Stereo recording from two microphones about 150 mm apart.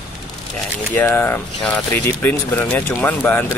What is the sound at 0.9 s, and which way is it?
Speech, 15° left (ahead or behind).